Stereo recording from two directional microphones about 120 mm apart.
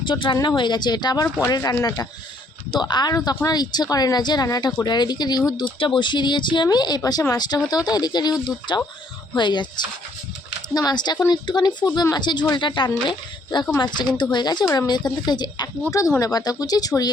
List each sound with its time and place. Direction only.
0.0 s a woman's voice: 45° left (ahead or behind)
1.7 s speech: 20° left (ahead or behind)
2.7 s a woman's voice: 35° left (ahead or behind)
10.8 s a woman's voice: 35° left (ahead or behind)